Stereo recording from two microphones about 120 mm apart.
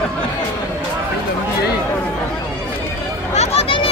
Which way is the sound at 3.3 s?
50° left (ahead or behind).